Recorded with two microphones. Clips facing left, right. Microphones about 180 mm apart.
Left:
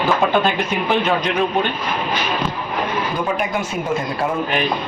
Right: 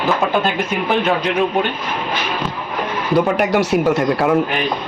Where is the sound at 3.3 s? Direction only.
70° right (ahead or behind).